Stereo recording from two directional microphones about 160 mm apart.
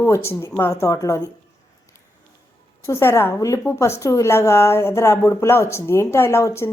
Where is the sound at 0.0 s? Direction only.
15° left (ahead or behind).